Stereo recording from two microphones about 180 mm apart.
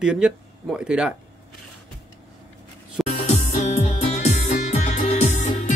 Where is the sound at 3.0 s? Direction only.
40° left (ahead or behind).